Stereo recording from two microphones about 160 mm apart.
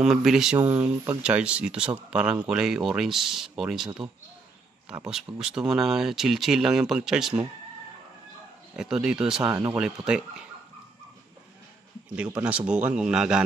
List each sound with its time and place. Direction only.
0.0 s speech: centre (ahead or behind)
0.6 s speech: 15° right (ahead or behind)
5.0 s speech: 5° right (ahead or behind)
8.7 s speech: 5° right (ahead or behind)
9.4 s speech: 25° right (ahead or behind)
9.8 s speech: 5° right (ahead or behind)
12.2 s speech: 10° right (ahead or behind)